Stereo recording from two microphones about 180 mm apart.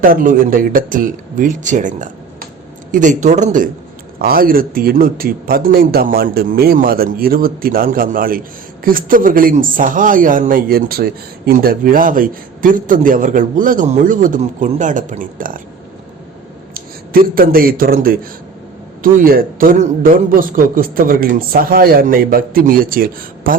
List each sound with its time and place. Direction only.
0.0 s speech: 50° right (ahead or behind)
4.2 s speech: 55° right (ahead or behind)
16.7 s a man's voice: 55° right (ahead or behind)